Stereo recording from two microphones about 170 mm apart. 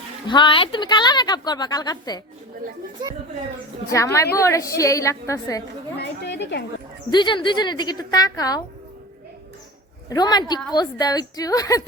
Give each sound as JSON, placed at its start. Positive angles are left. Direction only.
{"t": 0.3, "sound": "a woman's voice", "side_deg": 30}
{"t": 3.8, "sound": "a woman's voice", "side_deg": 20}
{"t": 6.2, "sound": "a woman's voice", "side_deg": 90}
{"t": 7.1, "sound": "a woman's voice", "side_deg": 25}
{"t": 10.1, "sound": "a woman's voice", "side_deg": 25}